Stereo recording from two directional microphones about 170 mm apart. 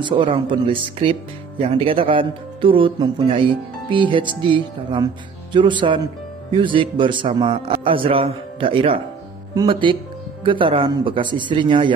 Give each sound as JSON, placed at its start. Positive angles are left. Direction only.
{"t": 0.0, "sound": "a man's voice", "side_deg": -30}